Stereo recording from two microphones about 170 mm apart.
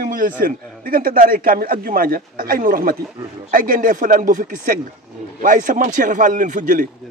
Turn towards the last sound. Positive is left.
turn(degrees=-50)  # may be behind; listen again after turning